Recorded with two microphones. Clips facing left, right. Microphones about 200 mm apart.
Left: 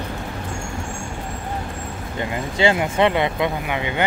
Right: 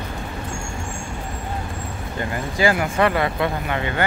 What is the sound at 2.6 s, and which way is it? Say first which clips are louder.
Speech: left 1 dB; 20° left (ahead or behind).